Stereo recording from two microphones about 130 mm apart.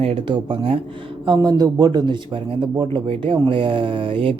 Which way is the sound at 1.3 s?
30° right (ahead or behind).